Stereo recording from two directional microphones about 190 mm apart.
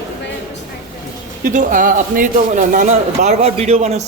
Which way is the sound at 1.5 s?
45° right (ahead or behind).